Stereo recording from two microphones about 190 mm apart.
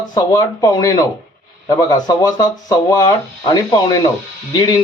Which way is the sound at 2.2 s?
20° left (ahead or behind).